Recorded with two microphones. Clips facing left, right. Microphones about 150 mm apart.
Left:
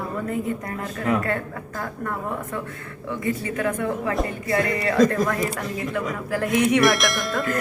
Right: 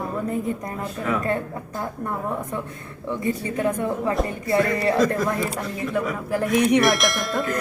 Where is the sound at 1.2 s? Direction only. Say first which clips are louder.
Right 2 dB; 20° right (ahead or behind).